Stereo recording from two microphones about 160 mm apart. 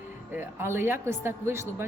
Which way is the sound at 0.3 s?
15° right (ahead or behind).